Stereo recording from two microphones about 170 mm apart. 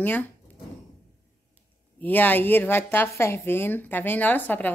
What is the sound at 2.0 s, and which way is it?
Speech, 10° left (ahead or behind).